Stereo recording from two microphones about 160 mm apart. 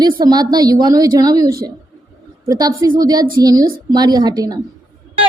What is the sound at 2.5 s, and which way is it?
A woman's voice, 25° right (ahead or behind).